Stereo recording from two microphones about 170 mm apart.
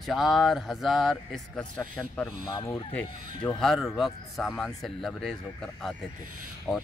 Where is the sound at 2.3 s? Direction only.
25° left (ahead or behind).